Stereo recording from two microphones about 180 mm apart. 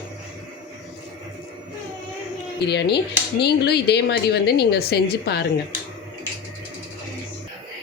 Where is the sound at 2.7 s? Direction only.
70° left (ahead or behind).